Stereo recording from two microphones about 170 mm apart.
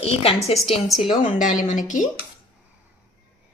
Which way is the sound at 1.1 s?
50° left (ahead or behind).